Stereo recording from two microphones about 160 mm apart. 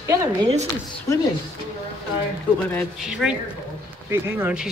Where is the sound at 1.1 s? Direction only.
20° left (ahead or behind).